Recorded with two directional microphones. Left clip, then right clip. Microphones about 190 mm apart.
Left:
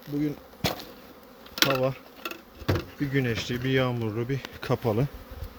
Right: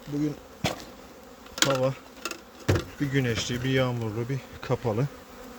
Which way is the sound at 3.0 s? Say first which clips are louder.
Even; 15° left (ahead or behind).